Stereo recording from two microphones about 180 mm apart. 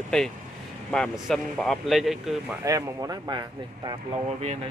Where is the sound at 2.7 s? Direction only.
20° right (ahead or behind).